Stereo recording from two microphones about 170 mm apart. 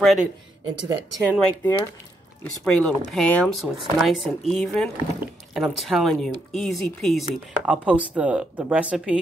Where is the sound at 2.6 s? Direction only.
5° left (ahead or behind).